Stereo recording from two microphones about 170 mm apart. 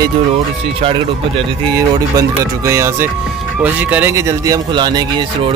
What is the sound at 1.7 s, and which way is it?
Speech, 20° right (ahead or behind).